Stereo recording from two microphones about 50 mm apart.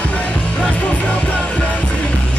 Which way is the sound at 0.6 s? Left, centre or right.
Left.